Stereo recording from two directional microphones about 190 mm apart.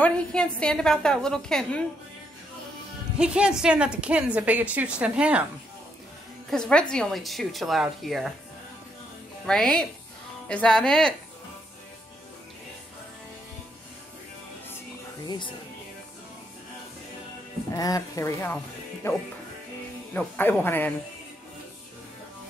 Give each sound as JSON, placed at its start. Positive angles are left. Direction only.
{"t": 0.0, "sound": "a woman's voice", "side_deg": 5}
{"t": 3.2, "sound": "a woman's voice", "side_deg": -5}
{"t": 6.5, "sound": "a woman's voice", "side_deg": 5}
{"t": 9.5, "sound": "a woman's voice", "side_deg": 5}
{"t": 15.2, "sound": "speech", "side_deg": 25}
{"t": 17.7, "sound": "speech", "side_deg": 20}